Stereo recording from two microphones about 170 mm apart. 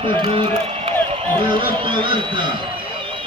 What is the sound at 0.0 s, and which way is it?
A man's voice, 30° right (ahead or behind).